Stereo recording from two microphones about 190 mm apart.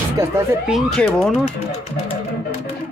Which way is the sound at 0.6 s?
Centre (ahead or behind).